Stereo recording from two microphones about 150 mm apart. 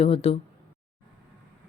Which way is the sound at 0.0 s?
40° left (ahead or behind).